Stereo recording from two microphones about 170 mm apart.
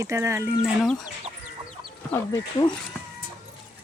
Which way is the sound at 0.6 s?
Centre (ahead or behind).